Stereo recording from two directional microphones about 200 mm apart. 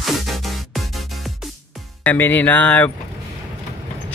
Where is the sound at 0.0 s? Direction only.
Centre (ahead or behind).